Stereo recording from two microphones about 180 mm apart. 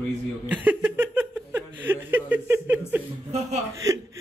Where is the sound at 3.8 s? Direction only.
15° right (ahead or behind).